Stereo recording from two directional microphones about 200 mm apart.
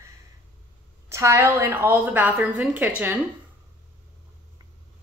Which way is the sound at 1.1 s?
15° right (ahead or behind).